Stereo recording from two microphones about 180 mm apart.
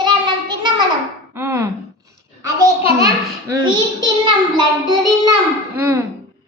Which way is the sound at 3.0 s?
20° right (ahead or behind).